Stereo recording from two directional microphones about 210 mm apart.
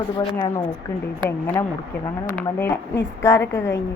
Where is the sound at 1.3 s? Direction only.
10° left (ahead or behind).